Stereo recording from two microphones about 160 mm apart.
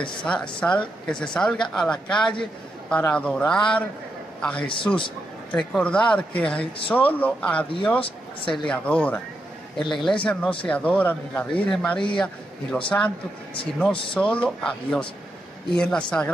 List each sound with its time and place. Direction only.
0.2 s a man's voice: 5° left (ahead or behind)
8.0 s speech: 35° left (ahead or behind)
8.6 s speech: 5° left (ahead or behind)
12.9 s speech: 15° left (ahead or behind)
14.1 s speech: 5° left (ahead or behind)